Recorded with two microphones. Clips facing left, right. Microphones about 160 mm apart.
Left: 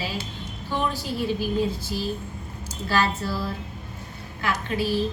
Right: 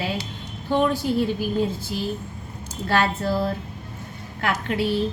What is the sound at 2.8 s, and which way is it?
A woman's voice, 55° right (ahead or behind).